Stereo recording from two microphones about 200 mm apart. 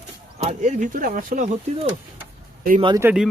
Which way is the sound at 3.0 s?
Centre (ahead or behind).